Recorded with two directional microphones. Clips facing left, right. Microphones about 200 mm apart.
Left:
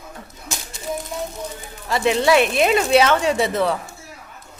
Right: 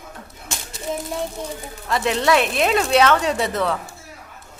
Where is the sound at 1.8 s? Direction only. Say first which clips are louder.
Left 2 dB; 5° left (ahead or behind).